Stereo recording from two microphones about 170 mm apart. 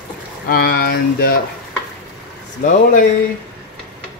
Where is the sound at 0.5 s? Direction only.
65° left (ahead or behind).